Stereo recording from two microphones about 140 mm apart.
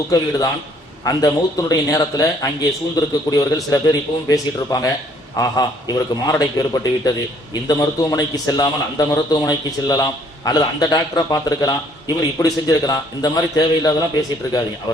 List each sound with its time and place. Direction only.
0.1 s a man's voice: 25° left (ahead or behind)